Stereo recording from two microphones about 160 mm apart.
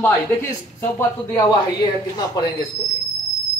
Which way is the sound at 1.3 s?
25° left (ahead or behind).